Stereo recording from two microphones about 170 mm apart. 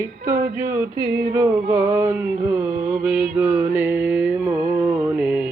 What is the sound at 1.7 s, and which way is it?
Mantra, 15° right (ahead or behind).